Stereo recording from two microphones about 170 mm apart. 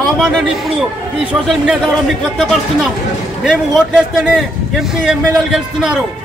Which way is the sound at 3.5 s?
Centre (ahead or behind).